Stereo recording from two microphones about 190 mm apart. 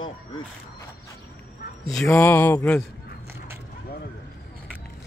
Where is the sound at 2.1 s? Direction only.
10° left (ahead or behind).